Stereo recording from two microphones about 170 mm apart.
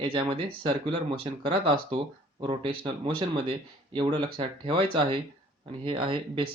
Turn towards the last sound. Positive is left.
turn(degrees=-30)  # may be behind; listen again after turning